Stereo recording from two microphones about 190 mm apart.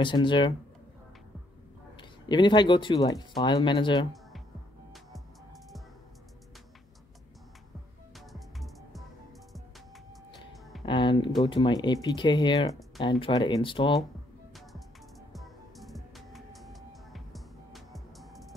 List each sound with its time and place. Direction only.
0.0 s speech: 25° left (ahead or behind)
2.0 s speech: 25° left (ahead or behind)
8.3 s music: centre (ahead or behind)
10.9 s speech: 25° left (ahead or behind)
15.3 s music: centre (ahead or behind)